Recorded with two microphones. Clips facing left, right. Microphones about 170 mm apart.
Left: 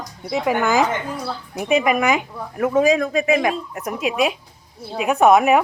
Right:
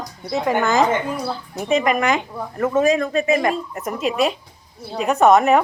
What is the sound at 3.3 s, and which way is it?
Speech, centre (ahead or behind).